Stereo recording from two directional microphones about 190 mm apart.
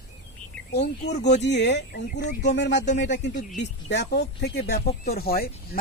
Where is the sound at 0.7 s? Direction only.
60° left (ahead or behind).